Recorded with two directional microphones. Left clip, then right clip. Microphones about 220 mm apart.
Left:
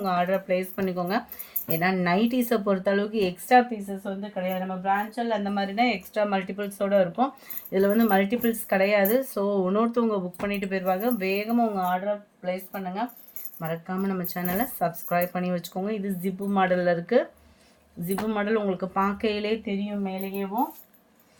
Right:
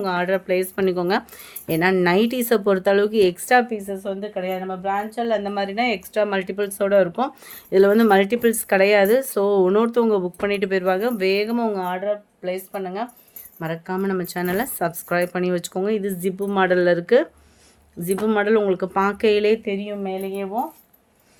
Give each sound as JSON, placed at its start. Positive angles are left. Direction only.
{"t": 0.0, "sound": "speech", "side_deg": -45}